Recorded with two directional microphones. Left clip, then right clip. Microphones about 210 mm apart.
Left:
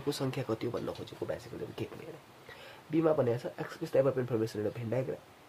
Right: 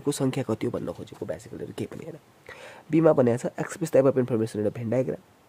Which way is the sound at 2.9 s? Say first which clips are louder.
Right 8 dB; 50° right (ahead or behind).